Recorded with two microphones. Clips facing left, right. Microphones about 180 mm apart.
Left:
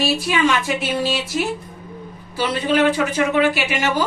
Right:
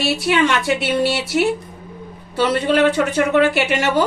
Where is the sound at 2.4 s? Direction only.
65° right (ahead or behind).